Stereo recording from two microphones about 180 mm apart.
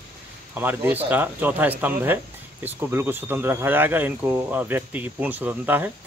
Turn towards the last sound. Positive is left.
turn(degrees=-10)  # may be behind; listen again after turning